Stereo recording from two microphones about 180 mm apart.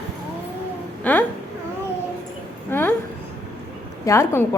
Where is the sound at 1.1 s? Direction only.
10° left (ahead or behind).